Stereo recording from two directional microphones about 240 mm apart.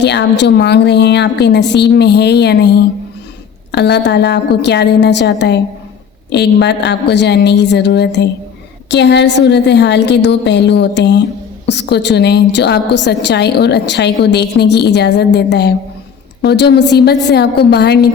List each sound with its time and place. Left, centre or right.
0.0 s a woman's voice: left